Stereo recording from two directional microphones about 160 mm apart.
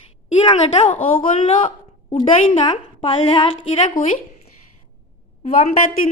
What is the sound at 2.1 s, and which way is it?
A woman's voice, 30° left (ahead or behind).